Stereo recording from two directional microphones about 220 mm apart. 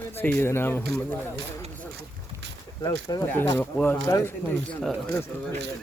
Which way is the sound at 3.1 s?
15° left (ahead or behind).